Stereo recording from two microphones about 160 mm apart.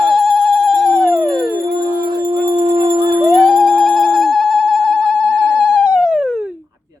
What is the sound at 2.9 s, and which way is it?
Music, 25° right (ahead or behind).